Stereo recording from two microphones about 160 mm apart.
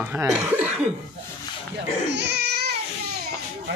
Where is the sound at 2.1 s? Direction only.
90° right.